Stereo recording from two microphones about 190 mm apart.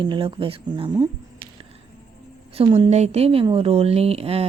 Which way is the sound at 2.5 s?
30° right (ahead or behind).